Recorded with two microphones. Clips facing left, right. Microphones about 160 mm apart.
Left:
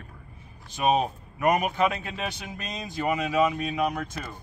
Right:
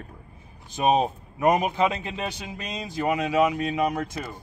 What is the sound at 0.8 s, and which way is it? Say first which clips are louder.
Speech: right 2 dB; 25° right (ahead or behind).